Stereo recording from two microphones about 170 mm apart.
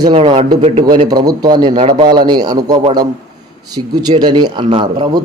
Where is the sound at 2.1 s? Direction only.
25° right (ahead or behind).